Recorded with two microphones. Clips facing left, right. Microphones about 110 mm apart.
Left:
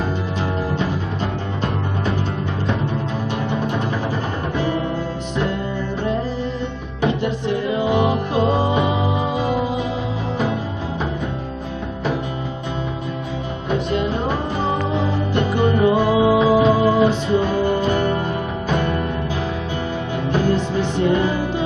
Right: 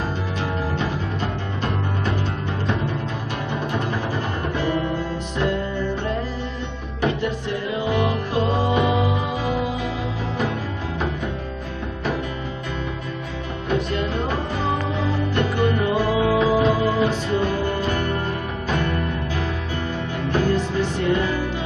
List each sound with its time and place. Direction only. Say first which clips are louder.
7.9 s music: left 2 dB; 20° left (ahead or behind)
15.0 s music: left 2 dB; 25° left (ahead or behind)
20.5 s music: left 2 dB; 30° left (ahead or behind)